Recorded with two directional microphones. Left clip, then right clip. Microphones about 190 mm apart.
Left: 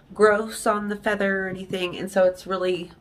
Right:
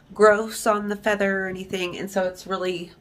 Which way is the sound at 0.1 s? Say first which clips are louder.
Right 2 dB; 10° right (ahead or behind).